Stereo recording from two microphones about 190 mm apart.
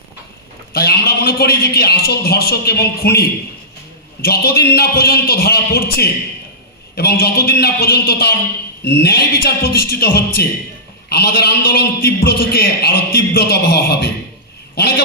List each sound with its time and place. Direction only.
0.7 s a man's voice: 55° left (ahead or behind)